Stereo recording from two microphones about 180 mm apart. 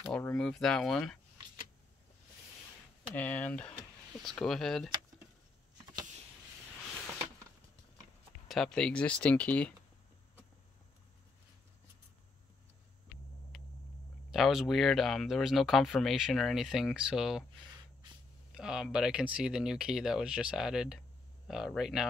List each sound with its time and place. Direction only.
0.0 s speech: 5° left (ahead or behind)
3.2 s speech: 10° left (ahead or behind)
8.5 s speech: centre (ahead or behind)
13.5 s vehicle: centre (ahead or behind)
14.3 s speech: centre (ahead or behind)
18.6 s speech: 5° right (ahead or behind)